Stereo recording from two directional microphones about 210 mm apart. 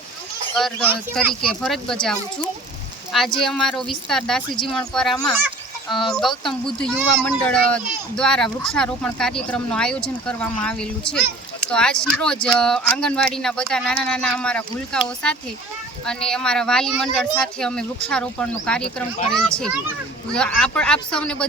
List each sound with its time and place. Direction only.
0.5 s a child's voice: 5° left (ahead or behind)